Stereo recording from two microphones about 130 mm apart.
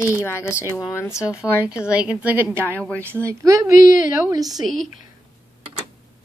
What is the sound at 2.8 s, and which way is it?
Speech, 10° left (ahead or behind).